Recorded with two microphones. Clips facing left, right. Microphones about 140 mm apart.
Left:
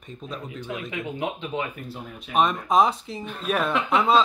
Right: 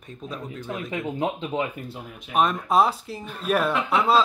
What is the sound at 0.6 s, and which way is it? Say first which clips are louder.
Speech: right 3 dB; 35° right (ahead or behind).